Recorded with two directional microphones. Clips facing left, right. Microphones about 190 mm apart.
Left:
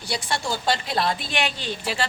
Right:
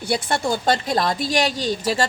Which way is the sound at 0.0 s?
55° right (ahead or behind).